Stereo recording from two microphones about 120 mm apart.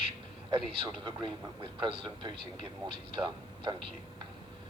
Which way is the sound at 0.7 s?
45° right (ahead or behind).